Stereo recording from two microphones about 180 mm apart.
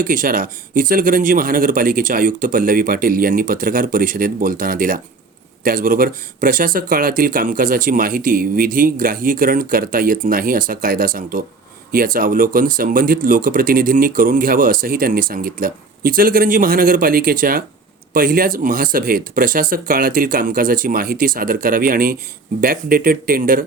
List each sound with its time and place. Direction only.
0.0 s speech: 50° right (ahead or behind)